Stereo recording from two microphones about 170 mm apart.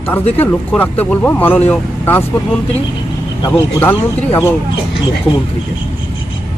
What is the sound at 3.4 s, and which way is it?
Speech, 20° left (ahead or behind).